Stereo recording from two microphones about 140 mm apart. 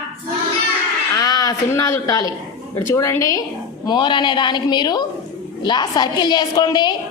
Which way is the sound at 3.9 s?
35° left (ahead or behind).